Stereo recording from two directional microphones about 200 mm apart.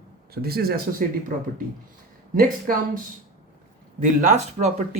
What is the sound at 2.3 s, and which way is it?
Speech, 45° right (ahead or behind).